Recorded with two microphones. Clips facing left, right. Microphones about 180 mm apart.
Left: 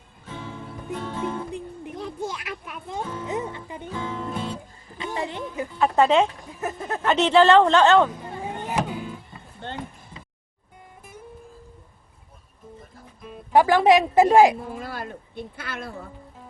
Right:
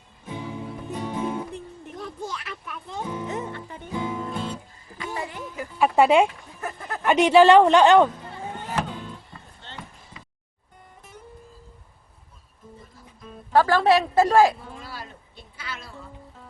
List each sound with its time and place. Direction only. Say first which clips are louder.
0.3 s music: right 3 dB; 15° right (ahead or behind)
1.5 s a sound: left 3 dB; 15° left (ahead or behind)
3.0 s speech: right 1 dB; 15° right (ahead or behind)
3.2 s music: left 2 dB; 15° left (ahead or behind)
3.8 s music: right 2 dB; 15° right (ahead or behind)
4.3 s music: left 1 dB; centre (ahead or behind)
4.9 s a sound: left 3 dB; 20° left (ahead or behind)
5.8 s a woman's voice: right 1 dB; 10° right (ahead or behind)
6.6 s a sound: left 4 dB; 20° left (ahead or behind)
7.0 s a woman's voice: right 2 dB; 10° right (ahead or behind)
8.2 s vehicle: left 3 dB; 15° left (ahead or behind)
9.6 s a sound: left 12 dB; 50° left (ahead or behind)
13.2 s speech: left 2 dB; 15° left (ahead or behind)
14.7 s speech: left 6 dB; 55° left (ahead or behind)